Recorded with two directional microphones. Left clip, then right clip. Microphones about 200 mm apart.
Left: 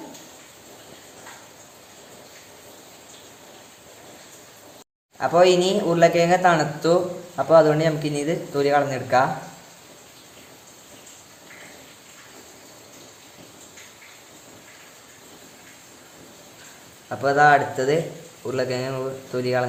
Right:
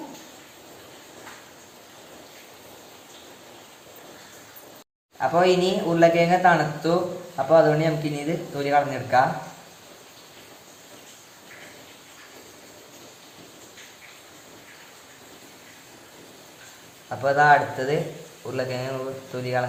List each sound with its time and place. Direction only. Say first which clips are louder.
5.2 s a man's voice: left 3 dB; 45° left (ahead or behind)
17.1 s a man's voice: left 1 dB; 40° left (ahead or behind)